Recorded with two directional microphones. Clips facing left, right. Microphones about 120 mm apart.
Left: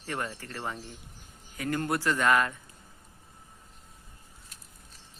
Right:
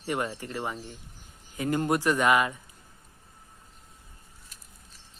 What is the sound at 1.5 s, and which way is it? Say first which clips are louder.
A man's voice: right 4 dB; 20° right (ahead or behind).